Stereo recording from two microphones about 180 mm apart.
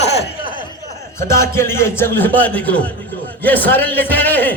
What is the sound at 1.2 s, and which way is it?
A man's voice, 15° left (ahead or behind).